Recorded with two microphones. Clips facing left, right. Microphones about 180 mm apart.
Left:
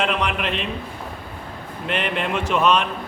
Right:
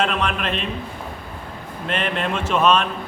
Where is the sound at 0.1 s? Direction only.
15° left (ahead or behind).